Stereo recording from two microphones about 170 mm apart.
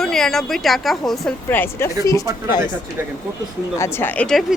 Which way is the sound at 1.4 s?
10° left (ahead or behind).